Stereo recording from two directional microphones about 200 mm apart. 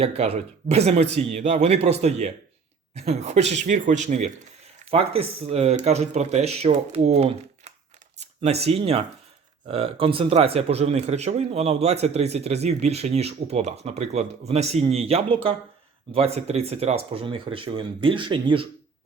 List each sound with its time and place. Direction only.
0.0 s speech: 30° right (ahead or behind)